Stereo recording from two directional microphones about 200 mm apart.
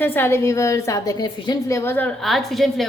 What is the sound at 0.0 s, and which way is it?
A woman's voice, 10° left (ahead or behind).